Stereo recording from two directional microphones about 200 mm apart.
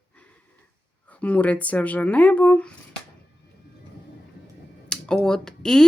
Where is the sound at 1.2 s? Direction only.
5° left (ahead or behind).